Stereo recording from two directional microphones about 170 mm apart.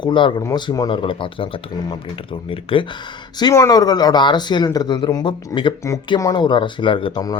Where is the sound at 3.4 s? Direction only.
20° left (ahead or behind).